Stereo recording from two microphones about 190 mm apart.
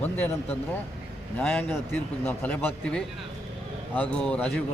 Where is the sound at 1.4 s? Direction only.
10° left (ahead or behind).